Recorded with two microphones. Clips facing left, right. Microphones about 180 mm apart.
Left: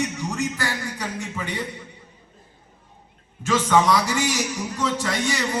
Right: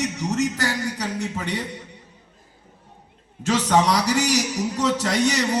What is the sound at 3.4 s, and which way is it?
A man's voice, 40° right (ahead or behind).